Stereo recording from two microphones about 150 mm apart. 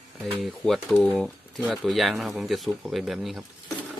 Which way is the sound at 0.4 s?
Centre (ahead or behind).